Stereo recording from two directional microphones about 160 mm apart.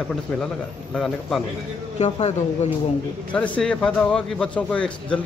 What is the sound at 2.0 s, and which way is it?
Speech, 45° left (ahead or behind).